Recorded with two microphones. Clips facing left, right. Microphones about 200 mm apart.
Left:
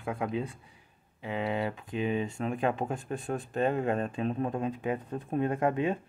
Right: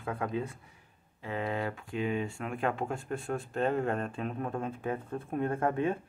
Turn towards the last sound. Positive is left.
turn(degrees=15)  # may be behind; listen again after turning